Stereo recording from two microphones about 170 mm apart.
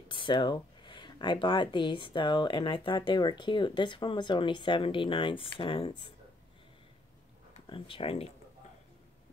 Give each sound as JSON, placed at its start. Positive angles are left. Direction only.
{"t": 0.1, "sound": "speech", "side_deg": 30}
{"t": 7.7, "sound": "speech", "side_deg": 30}